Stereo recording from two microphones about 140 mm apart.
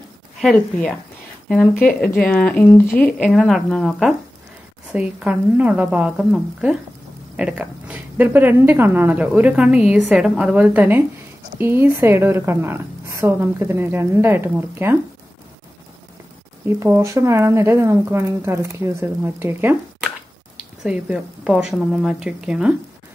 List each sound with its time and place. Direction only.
0.4 s a woman's voice: 5° left (ahead or behind); by 15.0 s 15° right (ahead or behind)
16.6 s speech: 20° right (ahead or behind)
20.8 s a woman's voice: 5° right (ahead or behind)